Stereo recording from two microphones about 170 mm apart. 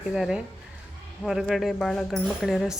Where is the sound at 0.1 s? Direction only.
5° right (ahead or behind).